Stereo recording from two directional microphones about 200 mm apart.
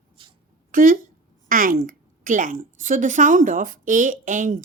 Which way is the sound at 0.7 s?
45° right (ahead or behind).